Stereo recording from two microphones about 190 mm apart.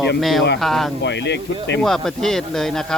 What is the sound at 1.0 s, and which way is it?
Speech, 65° left (ahead or behind).